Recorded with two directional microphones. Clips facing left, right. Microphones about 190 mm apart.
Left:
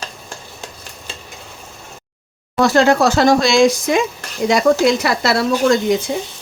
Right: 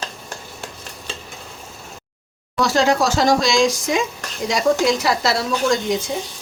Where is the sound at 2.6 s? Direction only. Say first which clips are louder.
Left 4 dB; 55° left (ahead or behind).